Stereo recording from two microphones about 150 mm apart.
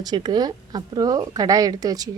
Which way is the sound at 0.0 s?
30° right (ahead or behind).